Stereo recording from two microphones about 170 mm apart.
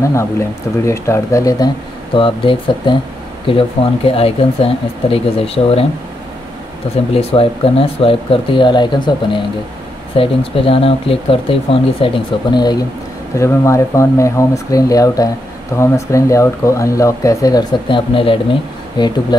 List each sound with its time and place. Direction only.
0.8 s speech: 15° left (ahead or behind)
2.1 s speech: 30° left (ahead or behind)
7.2 s speech: 35° left (ahead or behind)